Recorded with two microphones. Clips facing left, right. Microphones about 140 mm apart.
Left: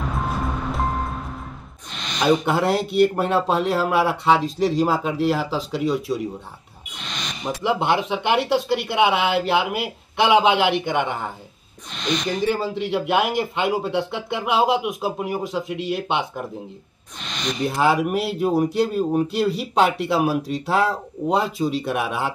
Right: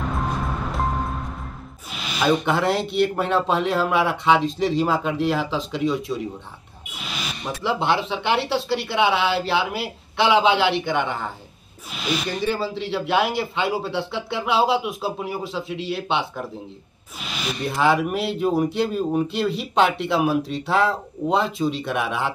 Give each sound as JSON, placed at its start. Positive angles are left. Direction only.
{"t": 0.0, "sound": "music", "side_deg": 0}
{"t": 1.9, "sound": "speech", "side_deg": -5}
{"t": 6.9, "sound": "music", "side_deg": -5}
{"t": 7.6, "sound": "speech", "side_deg": 10}
{"t": 9.8, "sound": "a man's voice", "side_deg": 50}
{"t": 10.5, "sound": "speech", "side_deg": 15}
{"t": 11.9, "sound": "speech", "side_deg": -5}
{"t": 12.4, "sound": "speech", "side_deg": 15}
{"t": 15.6, "sound": "speech", "side_deg": 50}
{"t": 15.9, "sound": "speech", "side_deg": 10}
{"t": 17.2, "sound": "a sound", "side_deg": -5}
{"t": 17.6, "sound": "speech", "side_deg": 10}